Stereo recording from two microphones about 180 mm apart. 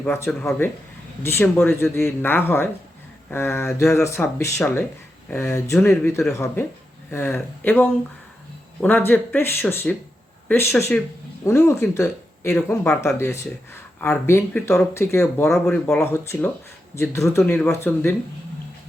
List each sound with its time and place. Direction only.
0.0 s speech: 10° left (ahead or behind)